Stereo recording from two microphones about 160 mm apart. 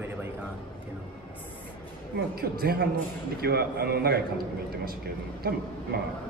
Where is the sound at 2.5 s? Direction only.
75° right (ahead or behind).